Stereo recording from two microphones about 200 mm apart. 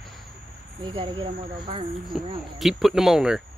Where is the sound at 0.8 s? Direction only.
25° right (ahead or behind).